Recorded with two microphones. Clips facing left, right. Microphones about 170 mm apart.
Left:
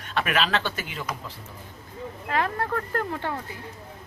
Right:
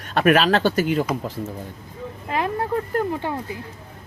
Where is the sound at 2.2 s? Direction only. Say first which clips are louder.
Right 3 dB; 15° right (ahead or behind).